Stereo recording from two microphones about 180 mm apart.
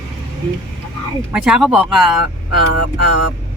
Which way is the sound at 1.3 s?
5° right (ahead or behind).